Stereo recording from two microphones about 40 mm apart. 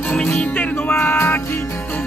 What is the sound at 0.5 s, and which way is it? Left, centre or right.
Music, left.